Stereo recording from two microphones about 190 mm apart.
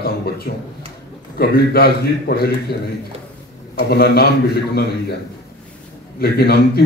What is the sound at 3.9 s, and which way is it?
Speech, 55° left (ahead or behind).